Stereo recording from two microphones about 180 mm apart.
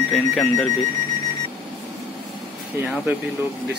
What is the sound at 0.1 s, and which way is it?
Speech, 5° left (ahead or behind).